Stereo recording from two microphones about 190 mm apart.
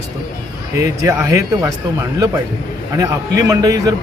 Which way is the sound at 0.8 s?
15° right (ahead or behind).